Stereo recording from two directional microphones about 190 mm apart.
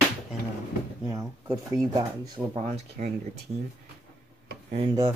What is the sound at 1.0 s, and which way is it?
Speech, 15° right (ahead or behind).